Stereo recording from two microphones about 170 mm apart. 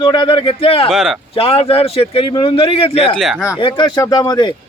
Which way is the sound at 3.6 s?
30° left (ahead or behind).